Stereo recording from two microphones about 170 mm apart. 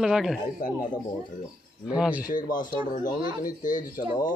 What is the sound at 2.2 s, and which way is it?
Speech, 55° left (ahead or behind).